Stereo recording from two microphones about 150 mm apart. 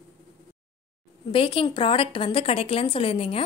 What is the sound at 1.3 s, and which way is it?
A woman's voice, 35° left (ahead or behind).